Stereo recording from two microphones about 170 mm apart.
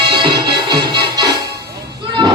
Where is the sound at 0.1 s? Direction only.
30° right (ahead or behind).